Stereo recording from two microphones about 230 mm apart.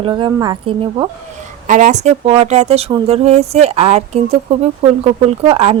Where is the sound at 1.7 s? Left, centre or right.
Right.